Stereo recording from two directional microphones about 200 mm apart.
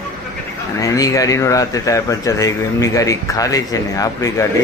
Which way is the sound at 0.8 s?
15° left (ahead or behind).